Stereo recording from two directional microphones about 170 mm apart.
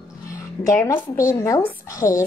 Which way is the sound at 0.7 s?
15° left (ahead or behind).